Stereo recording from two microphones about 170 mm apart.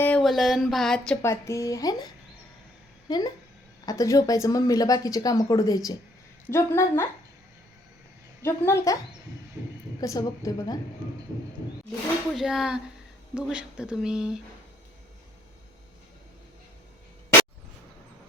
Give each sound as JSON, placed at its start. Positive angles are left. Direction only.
{"t": 0.0, "sound": "a sound", "side_deg": 5}
{"t": 1.3, "sound": "a woman's voice", "side_deg": 15}
{"t": 3.1, "sound": "a woman's voice", "side_deg": 25}
{"t": 8.4, "sound": "a woman's voice", "side_deg": 15}
{"t": 10.0, "sound": "a woman's voice", "side_deg": 20}
{"t": 12.3, "sound": "speech", "side_deg": 0}